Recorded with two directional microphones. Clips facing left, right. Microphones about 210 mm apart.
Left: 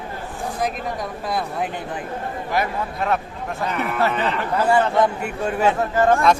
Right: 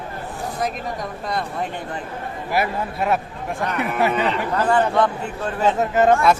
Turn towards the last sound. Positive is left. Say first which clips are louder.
# right 1 dB
turn(degrees=-20)  # may be behind; listen again after turning